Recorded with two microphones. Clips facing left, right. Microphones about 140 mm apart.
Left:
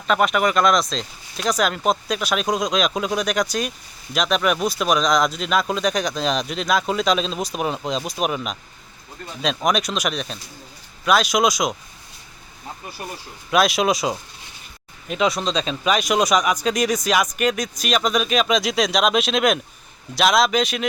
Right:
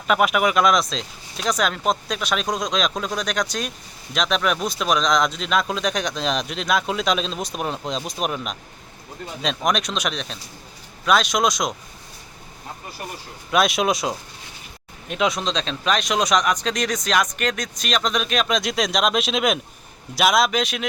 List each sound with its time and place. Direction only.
0.1 s speech: 5° right (ahead or behind)
13.5 s speech: centre (ahead or behind)